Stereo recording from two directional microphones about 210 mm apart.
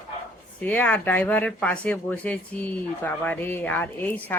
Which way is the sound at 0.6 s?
5° left (ahead or behind).